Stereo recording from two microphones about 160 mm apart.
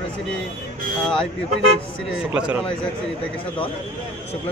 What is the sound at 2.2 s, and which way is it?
Speech, 5° right (ahead or behind).